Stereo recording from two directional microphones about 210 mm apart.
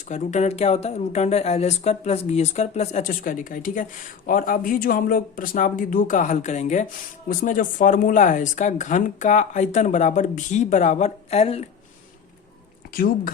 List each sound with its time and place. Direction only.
0.1 s speech: 35° left (ahead or behind)
12.9 s speech: 40° left (ahead or behind)